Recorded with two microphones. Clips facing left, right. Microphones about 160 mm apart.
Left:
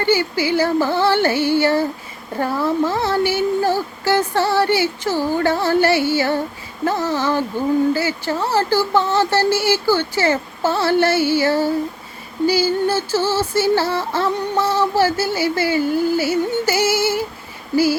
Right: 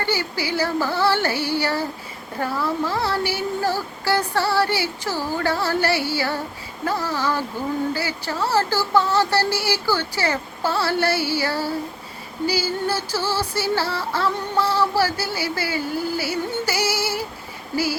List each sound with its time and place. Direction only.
0.0 s speech: 20° left (ahead or behind)